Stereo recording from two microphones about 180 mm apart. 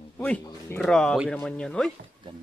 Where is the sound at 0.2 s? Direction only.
5° left (ahead or behind).